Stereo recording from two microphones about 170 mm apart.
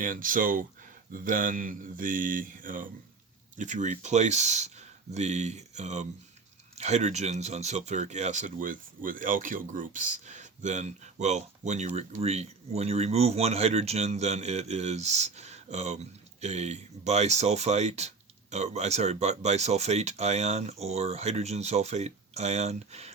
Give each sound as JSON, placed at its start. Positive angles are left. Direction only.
{"t": 0.0, "sound": "speech", "side_deg": -55}